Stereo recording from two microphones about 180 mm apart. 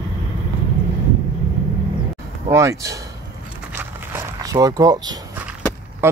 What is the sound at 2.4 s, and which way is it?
Speech, 15° right (ahead or behind).